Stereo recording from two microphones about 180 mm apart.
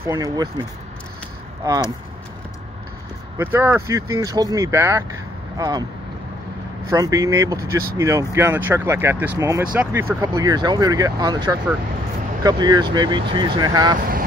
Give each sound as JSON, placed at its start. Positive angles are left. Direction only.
{"t": 0.0, "sound": "speech", "side_deg": -20}
{"t": 3.3, "sound": "speech", "side_deg": -15}
{"t": 6.9, "sound": "speech", "side_deg": -20}